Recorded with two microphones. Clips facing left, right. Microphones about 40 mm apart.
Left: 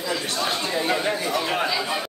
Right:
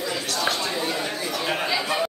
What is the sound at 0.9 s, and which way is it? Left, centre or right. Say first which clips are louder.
Speech: left 4 dB; centre.